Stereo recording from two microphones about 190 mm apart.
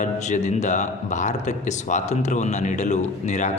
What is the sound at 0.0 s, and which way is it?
Speech, 40° left (ahead or behind).